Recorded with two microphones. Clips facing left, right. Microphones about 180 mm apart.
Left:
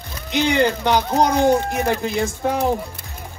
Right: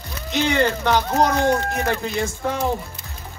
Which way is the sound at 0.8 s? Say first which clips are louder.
Left 1 dB; 15° left (ahead or behind).